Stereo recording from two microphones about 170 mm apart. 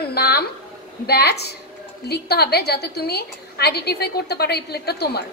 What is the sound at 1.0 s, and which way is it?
A woman's voice, 70° left (ahead or behind).